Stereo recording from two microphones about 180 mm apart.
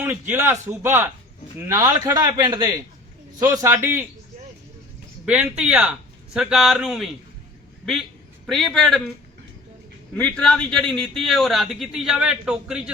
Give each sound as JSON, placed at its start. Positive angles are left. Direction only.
{"t": 0.0, "sound": "a man's voice", "side_deg": -10}
{"t": 5.2, "sound": "a man's voice", "side_deg": -10}
{"t": 8.4, "sound": "a man's voice", "side_deg": 0}
{"t": 10.2, "sound": "a man's voice", "side_deg": 5}